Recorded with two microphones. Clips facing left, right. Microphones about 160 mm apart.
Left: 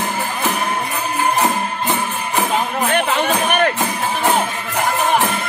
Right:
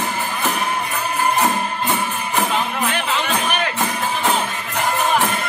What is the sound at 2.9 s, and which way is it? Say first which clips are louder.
Music: left 5 dB; 50° left (ahead or behind).